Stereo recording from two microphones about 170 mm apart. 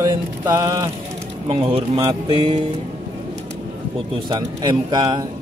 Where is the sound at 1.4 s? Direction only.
35° right (ahead or behind).